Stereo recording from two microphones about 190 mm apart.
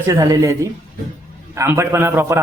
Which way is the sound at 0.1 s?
20° right (ahead or behind).